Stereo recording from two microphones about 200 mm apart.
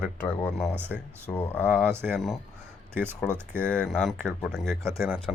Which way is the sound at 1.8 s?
10° right (ahead or behind).